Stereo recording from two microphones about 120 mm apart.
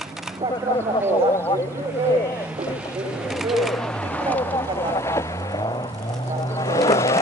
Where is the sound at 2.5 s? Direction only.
10° right (ahead or behind); by 5.9 s 35° left (ahead or behind).